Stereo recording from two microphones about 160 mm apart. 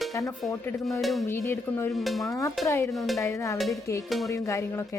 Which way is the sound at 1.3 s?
15° left (ahead or behind).